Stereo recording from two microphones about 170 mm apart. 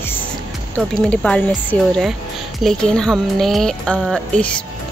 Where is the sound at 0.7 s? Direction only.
5° left (ahead or behind).